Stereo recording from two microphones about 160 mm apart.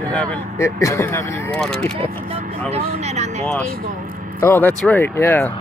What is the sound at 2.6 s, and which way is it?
Speech, 40° right (ahead or behind).